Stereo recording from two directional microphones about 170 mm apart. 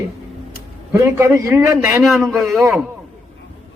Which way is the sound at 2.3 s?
Centre (ahead or behind).